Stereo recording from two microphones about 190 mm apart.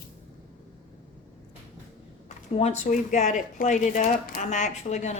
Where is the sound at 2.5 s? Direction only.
40° left (ahead or behind).